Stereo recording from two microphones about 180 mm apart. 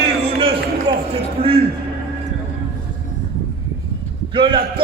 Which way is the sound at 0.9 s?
25° right (ahead or behind).